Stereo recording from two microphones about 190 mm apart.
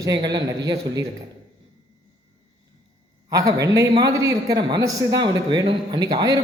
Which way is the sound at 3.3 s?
20° right (ahead or behind).